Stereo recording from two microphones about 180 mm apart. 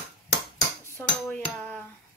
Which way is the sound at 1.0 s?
10° left (ahead or behind).